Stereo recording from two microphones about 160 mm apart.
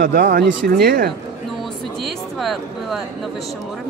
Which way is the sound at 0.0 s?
80° right.